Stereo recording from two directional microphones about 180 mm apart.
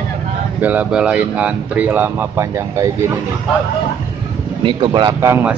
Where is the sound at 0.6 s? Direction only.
10° right (ahead or behind).